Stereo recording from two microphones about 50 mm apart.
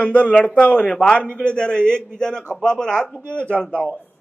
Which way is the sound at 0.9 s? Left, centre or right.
Left.